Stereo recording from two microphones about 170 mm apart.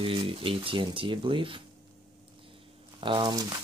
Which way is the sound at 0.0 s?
30° right (ahead or behind).